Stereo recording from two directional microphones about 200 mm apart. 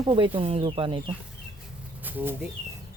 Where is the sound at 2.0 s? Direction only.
10° right (ahead or behind).